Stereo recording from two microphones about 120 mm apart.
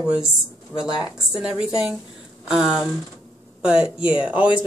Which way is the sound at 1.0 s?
5° right (ahead or behind).